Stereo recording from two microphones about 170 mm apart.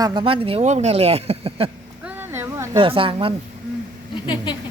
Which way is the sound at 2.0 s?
10° right (ahead or behind).